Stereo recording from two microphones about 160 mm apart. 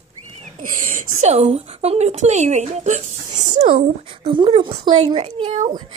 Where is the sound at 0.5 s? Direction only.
60° right (ahead or behind).